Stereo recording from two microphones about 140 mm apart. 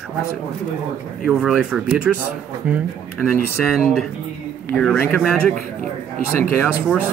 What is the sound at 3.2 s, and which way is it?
Speech, 15° left (ahead or behind).